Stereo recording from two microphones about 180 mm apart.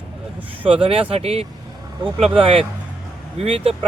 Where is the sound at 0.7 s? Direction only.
30° right (ahead or behind).